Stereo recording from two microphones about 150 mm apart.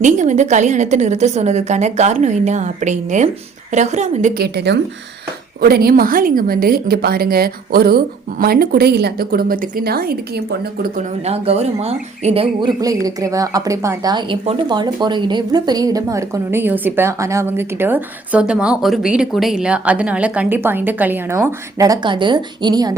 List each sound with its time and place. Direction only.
0.0 s a woman's voice: 55° right (ahead or behind)
4.4 s a woman's voice: 90° right
11.3 s a woman's voice: 45° right (ahead or behind)
12.8 s a woman's voice: 25° right (ahead or behind)